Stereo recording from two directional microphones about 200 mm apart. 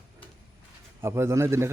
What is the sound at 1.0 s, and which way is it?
Speech, 10° right (ahead or behind).